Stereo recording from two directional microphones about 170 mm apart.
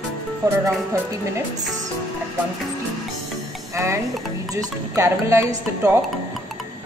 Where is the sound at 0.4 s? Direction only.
20° right (ahead or behind).